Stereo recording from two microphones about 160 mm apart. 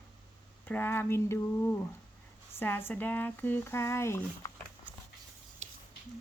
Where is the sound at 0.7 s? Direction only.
10° left (ahead or behind).